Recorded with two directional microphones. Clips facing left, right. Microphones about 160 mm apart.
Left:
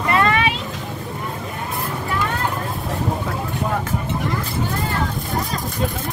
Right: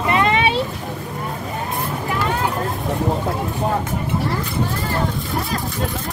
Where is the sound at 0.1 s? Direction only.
20° right (ahead or behind).